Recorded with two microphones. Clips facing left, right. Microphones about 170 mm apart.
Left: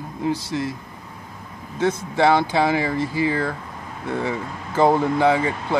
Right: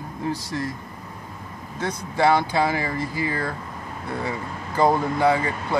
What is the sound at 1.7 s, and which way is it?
Speech, 25° left (ahead or behind).